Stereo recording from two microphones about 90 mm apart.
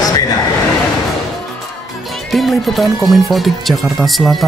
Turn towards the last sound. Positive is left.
turn(degrees=0)  # may be behind; listen again after turning